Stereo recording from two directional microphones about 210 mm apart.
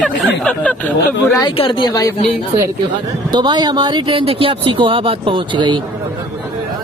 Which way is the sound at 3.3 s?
20° right (ahead or behind).